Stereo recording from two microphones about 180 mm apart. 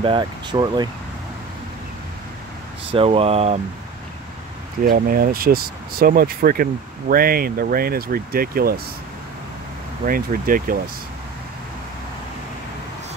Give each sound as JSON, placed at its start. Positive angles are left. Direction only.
{"t": 0.0, "sound": "speech", "side_deg": -25}
{"t": 2.9, "sound": "speech", "side_deg": -30}
{"t": 4.8, "sound": "speech", "side_deg": -55}
{"t": 10.0, "sound": "speech", "side_deg": -50}